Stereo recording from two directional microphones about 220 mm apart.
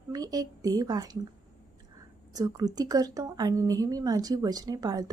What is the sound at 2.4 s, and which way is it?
A woman's voice, 15° right (ahead or behind).